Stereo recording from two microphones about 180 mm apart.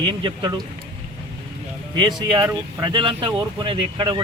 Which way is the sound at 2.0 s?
25° right (ahead or behind).